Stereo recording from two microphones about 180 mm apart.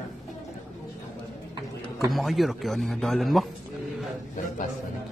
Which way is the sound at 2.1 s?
Centre (ahead or behind).